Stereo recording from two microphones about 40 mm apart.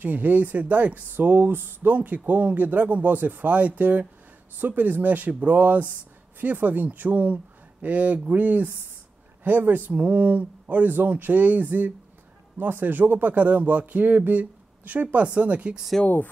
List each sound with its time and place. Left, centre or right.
0.0 s a man's voice: right
1.9 s speech: right
4.6 s a man's voice: right
11.1 s a man's voice: right
16.0 s speech: centre